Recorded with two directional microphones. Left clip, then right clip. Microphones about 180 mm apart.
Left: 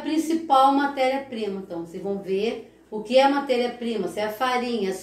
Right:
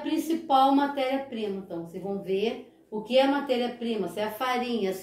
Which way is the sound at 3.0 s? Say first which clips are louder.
Left 5 dB; 20° right (ahead or behind).